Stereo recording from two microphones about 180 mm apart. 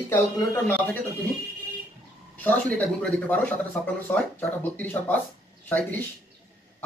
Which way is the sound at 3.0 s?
10° left (ahead or behind).